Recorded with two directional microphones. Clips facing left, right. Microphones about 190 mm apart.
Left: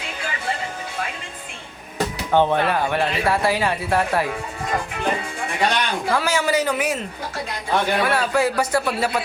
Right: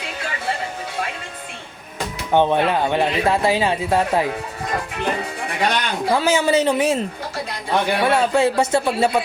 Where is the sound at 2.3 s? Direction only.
20° right (ahead or behind).